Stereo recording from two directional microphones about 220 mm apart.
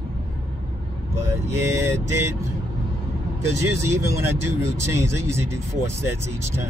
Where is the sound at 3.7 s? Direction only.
10° right (ahead or behind).